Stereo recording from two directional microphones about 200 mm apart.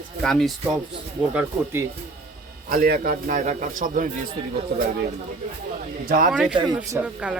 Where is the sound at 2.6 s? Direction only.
50° right (ahead or behind).